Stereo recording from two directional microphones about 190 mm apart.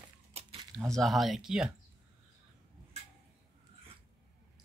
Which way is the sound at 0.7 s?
5° left (ahead or behind).